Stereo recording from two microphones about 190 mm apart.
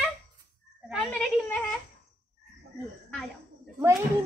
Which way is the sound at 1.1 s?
10° left (ahead or behind).